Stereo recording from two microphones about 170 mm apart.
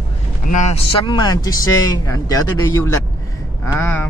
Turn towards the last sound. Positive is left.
turn(degrees=15)  # may be behind; listen again after turning